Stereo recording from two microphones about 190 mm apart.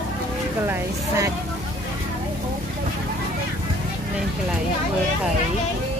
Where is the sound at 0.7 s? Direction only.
15° right (ahead or behind).